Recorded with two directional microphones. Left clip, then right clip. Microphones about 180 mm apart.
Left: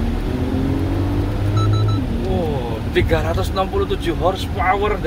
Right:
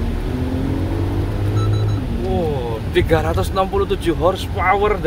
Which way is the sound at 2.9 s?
35° right (ahead or behind).